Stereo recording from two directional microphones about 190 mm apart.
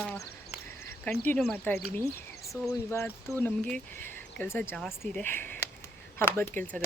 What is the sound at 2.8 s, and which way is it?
Speech, 15° left (ahead or behind).